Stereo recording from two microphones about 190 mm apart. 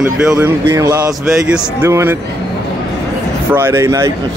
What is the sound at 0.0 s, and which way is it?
Speech, 10° right (ahead or behind).